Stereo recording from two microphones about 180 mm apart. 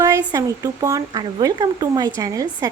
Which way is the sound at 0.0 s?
20° right (ahead or behind).